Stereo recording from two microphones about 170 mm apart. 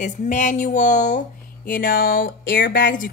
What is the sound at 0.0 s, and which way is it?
Speech, 45° left (ahead or behind).